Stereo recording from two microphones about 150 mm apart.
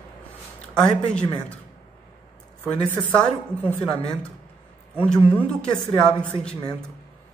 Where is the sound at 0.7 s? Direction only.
5° left (ahead or behind).